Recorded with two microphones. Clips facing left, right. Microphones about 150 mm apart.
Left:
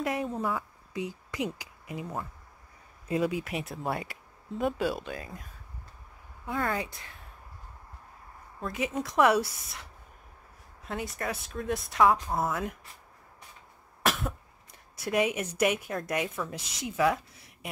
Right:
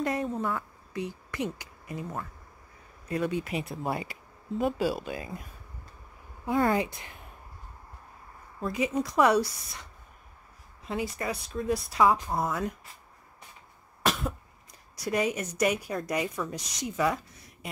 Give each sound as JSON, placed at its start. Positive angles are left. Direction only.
{"t": 0.0, "sound": "speech", "side_deg": 0}
{"t": 6.4, "sound": "speech", "side_deg": -35}
{"t": 8.5, "sound": "speech", "side_deg": 0}
{"t": 10.9, "sound": "speech", "side_deg": 0}
{"t": 14.0, "sound": "cough", "side_deg": 0}
{"t": 15.0, "sound": "speech", "side_deg": 5}